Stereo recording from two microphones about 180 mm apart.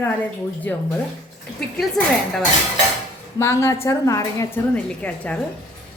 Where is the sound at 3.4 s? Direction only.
15° left (ahead or behind).